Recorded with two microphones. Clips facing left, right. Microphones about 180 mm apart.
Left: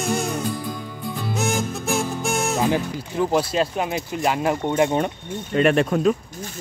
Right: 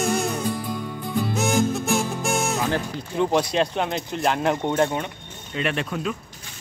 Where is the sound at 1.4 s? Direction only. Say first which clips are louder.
Right 2 dB; centre (ahead or behind).